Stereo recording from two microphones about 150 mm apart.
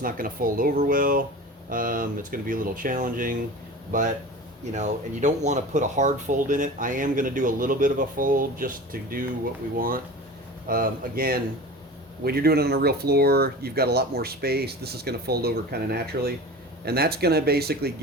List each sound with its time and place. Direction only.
0.0 s speech: 70° right (ahead or behind)
4.7 s speech: 55° right (ahead or behind); by 11.3 s 75° right (ahead or behind)
12.2 s speech: 90° right